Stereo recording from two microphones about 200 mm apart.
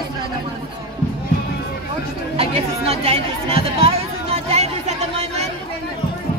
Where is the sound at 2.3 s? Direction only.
30° right (ahead or behind).